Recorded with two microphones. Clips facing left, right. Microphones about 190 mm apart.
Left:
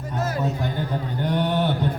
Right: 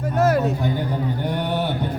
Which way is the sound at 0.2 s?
65° right (ahead or behind).